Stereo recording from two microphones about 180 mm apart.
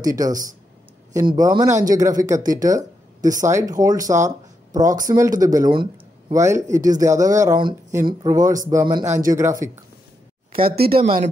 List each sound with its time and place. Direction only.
0.0 s speech: 20° right (ahead or behind)
10.5 s speech: 55° right (ahead or behind)